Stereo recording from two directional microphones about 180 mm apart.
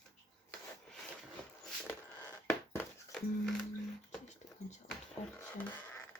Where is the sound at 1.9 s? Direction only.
10° left (ahead or behind).